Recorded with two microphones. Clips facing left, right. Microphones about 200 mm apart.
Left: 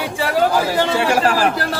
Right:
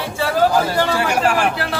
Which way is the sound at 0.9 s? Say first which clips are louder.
Left 1 dB; 30° left (ahead or behind).